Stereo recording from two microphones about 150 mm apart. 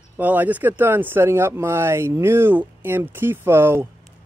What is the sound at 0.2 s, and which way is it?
Speech, 10° right (ahead or behind).